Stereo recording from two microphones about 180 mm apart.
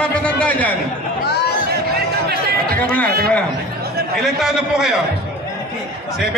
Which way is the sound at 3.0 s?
60° right (ahead or behind).